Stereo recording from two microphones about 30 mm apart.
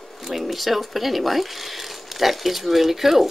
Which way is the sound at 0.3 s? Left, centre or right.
Centre.